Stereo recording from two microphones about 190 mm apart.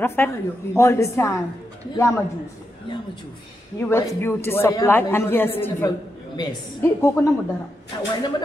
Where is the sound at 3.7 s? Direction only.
10° left (ahead or behind).